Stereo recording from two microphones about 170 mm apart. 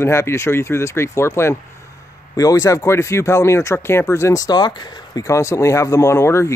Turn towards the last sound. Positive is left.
turn(degrees=15)  # may be behind; listen again after turning